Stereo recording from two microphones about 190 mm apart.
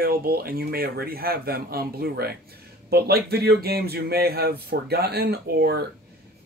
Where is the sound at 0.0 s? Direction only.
50° right (ahead or behind).